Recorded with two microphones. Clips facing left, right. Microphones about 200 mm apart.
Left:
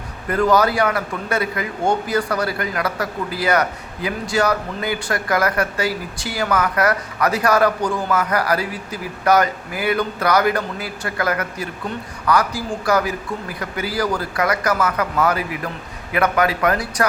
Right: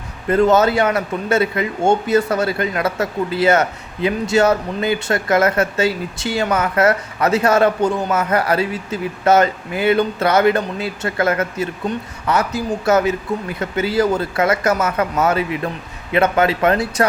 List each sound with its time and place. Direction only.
0.3 s a man's voice: 25° right (ahead or behind)